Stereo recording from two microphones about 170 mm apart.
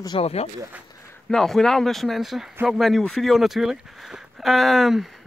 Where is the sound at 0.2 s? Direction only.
35° left (ahead or behind).